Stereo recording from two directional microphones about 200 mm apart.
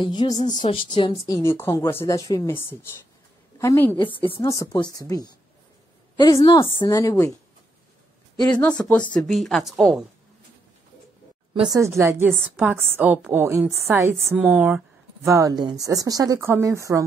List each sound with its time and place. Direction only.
0.0 s a woman's voice: 20° left (ahead or behind)
8.5 s a woman's voice: 5° left (ahead or behind)
12.0 s a woman's voice: 10° right (ahead or behind)